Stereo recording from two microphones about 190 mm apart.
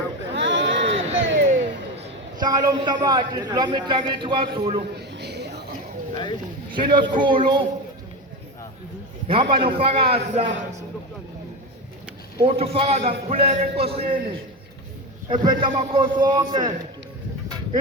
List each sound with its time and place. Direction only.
0.3 s a sound: 75° right (ahead or behind)
2.4 s a man's voice: 20° right (ahead or behind)
4.9 s a sound: 60° right (ahead or behind)
6.7 s a man's voice: 25° right (ahead or behind)
9.2 s a man's voice: 30° right (ahead or behind)
12.5 s a man's voice: 30° right (ahead or behind)
15.3 s a man's voice: 25° right (ahead or behind)